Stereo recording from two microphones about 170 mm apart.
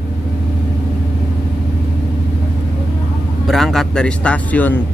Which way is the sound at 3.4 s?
Centre (ahead or behind).